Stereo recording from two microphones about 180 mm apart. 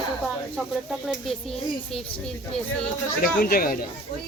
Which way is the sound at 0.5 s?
Centre (ahead or behind).